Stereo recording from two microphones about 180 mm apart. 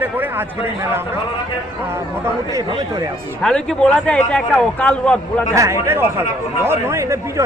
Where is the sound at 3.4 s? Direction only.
5° left (ahead or behind).